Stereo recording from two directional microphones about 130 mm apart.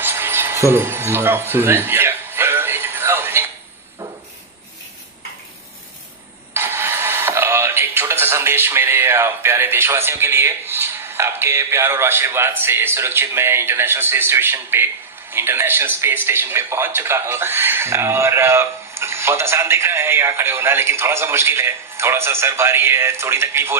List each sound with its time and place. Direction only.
0.0 s music: 15° right (ahead or behind)
6.5 s speech: 15° right (ahead or behind)